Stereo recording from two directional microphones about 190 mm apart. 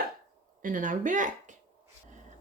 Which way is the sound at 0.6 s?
45° right (ahead or behind).